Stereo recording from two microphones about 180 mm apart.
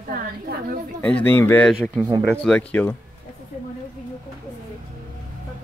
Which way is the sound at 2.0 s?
20° right (ahead or behind).